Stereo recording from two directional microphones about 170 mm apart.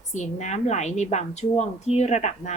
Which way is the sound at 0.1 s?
45° left (ahead or behind).